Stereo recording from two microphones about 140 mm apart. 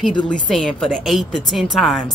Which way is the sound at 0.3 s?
Centre (ahead or behind).